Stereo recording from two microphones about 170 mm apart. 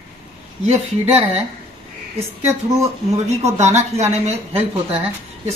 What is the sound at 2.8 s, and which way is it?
Speech, 40° right (ahead or behind).